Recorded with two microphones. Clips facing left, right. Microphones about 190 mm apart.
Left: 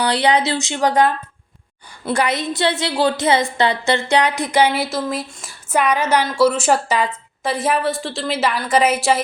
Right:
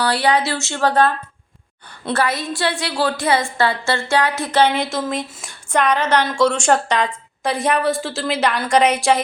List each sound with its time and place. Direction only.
0.0 s a woman's voice: 20° left (ahead or behind)
2.1 s a woman's voice: 20° left (ahead or behind); by 9.2 s centre (ahead or behind)